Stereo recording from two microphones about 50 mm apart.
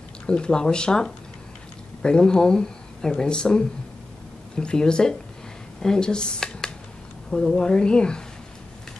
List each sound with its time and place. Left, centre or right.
0.3 s speech: centre